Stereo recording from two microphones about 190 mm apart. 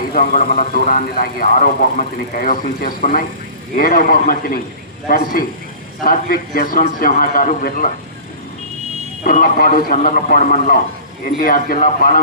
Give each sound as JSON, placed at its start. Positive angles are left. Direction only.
{"t": 0.1, "sound": "speech", "side_deg": 45}
{"t": 9.2, "sound": "speech", "side_deg": 50}